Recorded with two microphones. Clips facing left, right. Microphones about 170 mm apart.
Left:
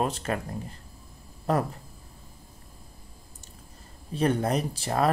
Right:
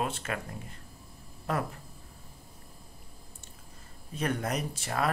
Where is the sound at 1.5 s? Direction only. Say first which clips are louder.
Left 6 dB; 35° left (ahead or behind).